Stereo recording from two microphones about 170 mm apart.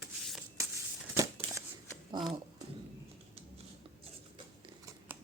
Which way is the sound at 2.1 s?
25° right (ahead or behind).